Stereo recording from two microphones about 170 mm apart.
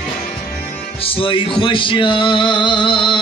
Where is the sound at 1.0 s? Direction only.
35° left (ahead or behind).